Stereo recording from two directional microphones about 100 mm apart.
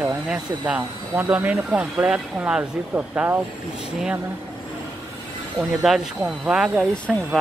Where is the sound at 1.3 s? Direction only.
15° right (ahead or behind).